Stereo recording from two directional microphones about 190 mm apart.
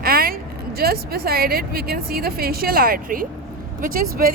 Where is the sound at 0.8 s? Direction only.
55° right (ahead or behind).